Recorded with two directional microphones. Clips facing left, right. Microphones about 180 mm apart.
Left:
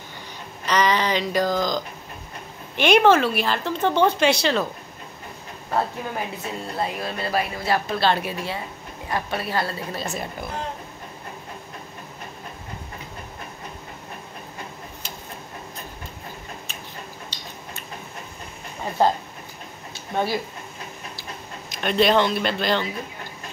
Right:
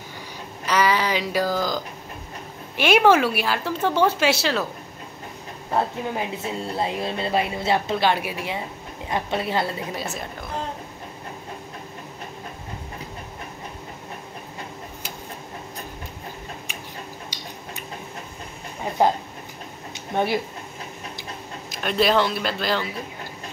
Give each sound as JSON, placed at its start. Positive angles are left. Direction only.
{"t": 0.7, "sound": "speech", "side_deg": -10}
{"t": 2.8, "sound": "speech", "side_deg": -5}
{"t": 5.7, "sound": "a woman's voice", "side_deg": -20}
{"t": 17.3, "sound": "a sound", "side_deg": -10}
{"t": 19.9, "sound": "a sound", "side_deg": -20}
{"t": 21.6, "sound": "a man's voice", "side_deg": 0}